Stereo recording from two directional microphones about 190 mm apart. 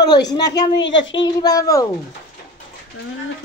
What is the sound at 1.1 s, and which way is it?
Speech, 20° left (ahead or behind).